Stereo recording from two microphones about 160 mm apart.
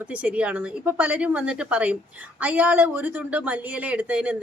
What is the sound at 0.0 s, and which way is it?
A woman's voice, 10° right (ahead or behind).